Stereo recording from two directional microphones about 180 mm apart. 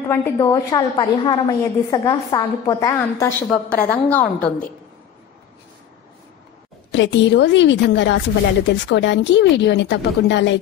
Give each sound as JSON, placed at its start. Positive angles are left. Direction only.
{"t": 0.1, "sound": "a woman's voice", "side_deg": 15}
{"t": 6.9, "sound": "speech", "side_deg": 85}